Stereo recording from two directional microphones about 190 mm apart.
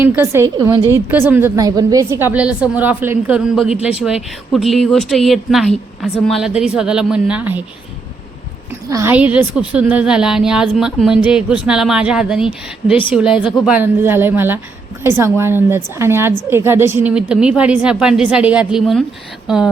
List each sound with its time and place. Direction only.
0.0 s a woman's voice: 10° right (ahead or behind)
8.9 s a woman's voice: 15° right (ahead or behind)